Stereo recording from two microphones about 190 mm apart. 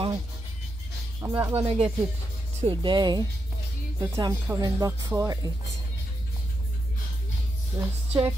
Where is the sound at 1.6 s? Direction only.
30° right (ahead or behind).